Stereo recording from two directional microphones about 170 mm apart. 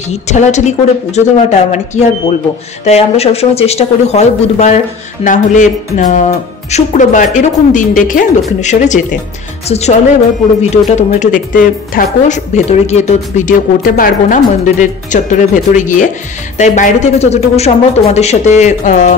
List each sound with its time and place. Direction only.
0.1 s speech: 45° left (ahead or behind)